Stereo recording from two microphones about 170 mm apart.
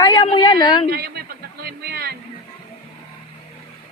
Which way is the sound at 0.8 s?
70° right (ahead or behind).